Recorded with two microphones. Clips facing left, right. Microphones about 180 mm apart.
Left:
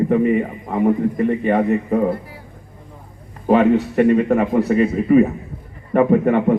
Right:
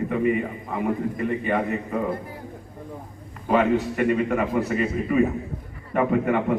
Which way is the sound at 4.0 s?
40° left (ahead or behind).